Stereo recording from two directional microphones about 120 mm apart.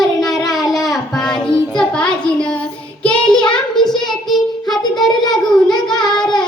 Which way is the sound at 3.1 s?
40° left (ahead or behind).